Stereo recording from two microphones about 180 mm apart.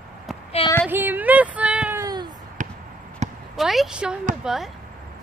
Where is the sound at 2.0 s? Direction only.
25° right (ahead or behind).